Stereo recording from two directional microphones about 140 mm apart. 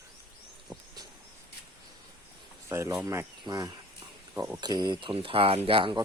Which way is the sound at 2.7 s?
20° right (ahead or behind).